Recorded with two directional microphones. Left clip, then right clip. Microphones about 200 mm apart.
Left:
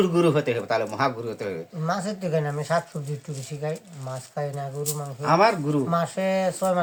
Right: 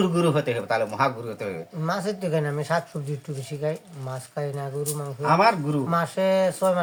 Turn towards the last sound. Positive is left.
turn(degrees=-15)  # may be behind; listen again after turning